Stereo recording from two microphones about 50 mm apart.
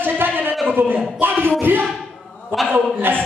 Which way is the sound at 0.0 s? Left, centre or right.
Right.